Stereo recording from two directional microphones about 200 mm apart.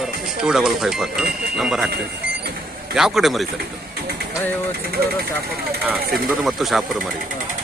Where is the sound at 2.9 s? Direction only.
Centre (ahead or behind).